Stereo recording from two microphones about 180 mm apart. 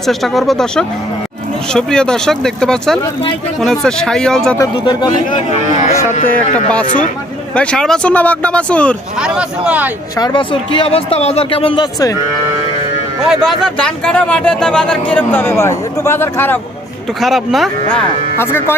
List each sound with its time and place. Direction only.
0.0 s speech: centre (ahead or behind)
4.5 s speech: 20° left (ahead or behind)
6.2 s speech: 5° left (ahead or behind)
6.8 s speech: 45° left (ahead or behind)
7.5 s speech: 5° left (ahead or behind)
9.1 s speech: 5° right (ahead or behind)
10.2 s speech: 25° left (ahead or behind)
13.3 s speech: centre (ahead or behind)
17.2 s speech: centre (ahead or behind)
17.9 s speech: 10° left (ahead or behind)